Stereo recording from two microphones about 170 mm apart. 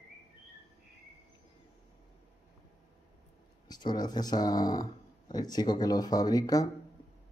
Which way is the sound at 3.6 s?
25° left (ahead or behind).